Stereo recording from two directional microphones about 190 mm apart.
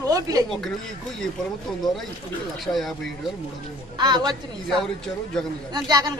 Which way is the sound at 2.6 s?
Centre (ahead or behind).